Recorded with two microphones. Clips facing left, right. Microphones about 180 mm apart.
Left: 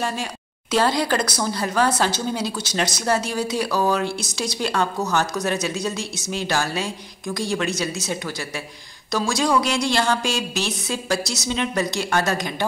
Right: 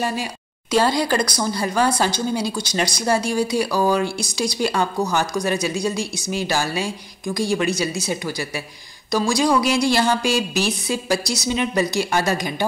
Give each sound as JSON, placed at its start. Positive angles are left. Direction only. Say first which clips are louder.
{"t": 0.0, "sound": "speech", "louder": "right 2 dB", "side_deg": -5}